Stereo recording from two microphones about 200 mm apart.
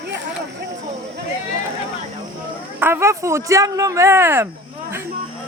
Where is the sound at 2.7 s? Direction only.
10° right (ahead or behind).